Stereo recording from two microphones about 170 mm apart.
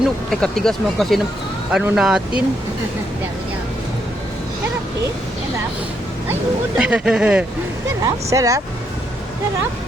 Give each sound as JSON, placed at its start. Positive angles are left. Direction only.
{"t": 0.3, "sound": "speech", "side_deg": 5}
{"t": 6.7, "sound": "speech", "side_deg": -5}
{"t": 8.0, "sound": "speech", "side_deg": -20}